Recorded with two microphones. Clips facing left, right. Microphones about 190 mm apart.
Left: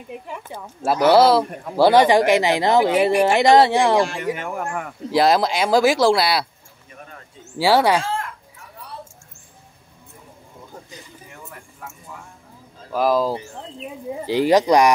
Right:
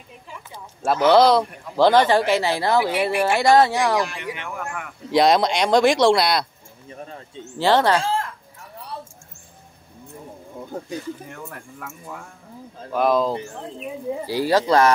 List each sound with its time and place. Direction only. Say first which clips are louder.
0.8 s speech: left 1 dB; 5° left (ahead or behind)
2.8 s speech: left 5 dB; 45° left (ahead or behind)
3.3 s speech: left 1 dB; 20° left (ahead or behind)
4.1 s speech: left 6 dB; 45° left (ahead or behind)
5.1 s speech: even; centre (ahead or behind)
6.9 s bird: right 5 dB; 30° right (ahead or behind)
7.5 s speech: left 1 dB; 10° left (ahead or behind)
12.9 s speech: even; centre (ahead or behind)
14.2 s speech: left 4 dB; 20° left (ahead or behind)